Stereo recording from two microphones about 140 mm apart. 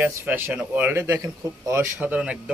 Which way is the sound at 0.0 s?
10° right (ahead or behind).